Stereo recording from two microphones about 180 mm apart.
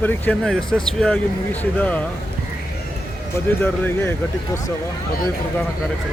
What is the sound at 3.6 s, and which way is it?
Speech, 10° left (ahead or behind).